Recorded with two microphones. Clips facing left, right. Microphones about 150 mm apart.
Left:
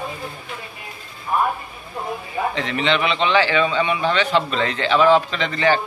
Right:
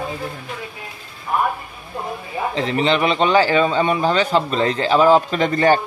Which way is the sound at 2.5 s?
35° right (ahead or behind).